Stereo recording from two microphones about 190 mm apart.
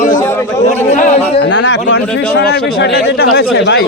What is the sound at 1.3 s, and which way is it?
Speech, 70° left (ahead or behind).